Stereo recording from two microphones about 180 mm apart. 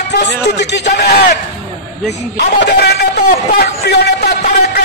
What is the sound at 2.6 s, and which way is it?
A man's voice, 60° left (ahead or behind).